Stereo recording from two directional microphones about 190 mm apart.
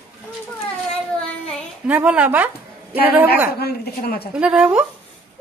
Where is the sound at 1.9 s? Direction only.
10° right (ahead or behind).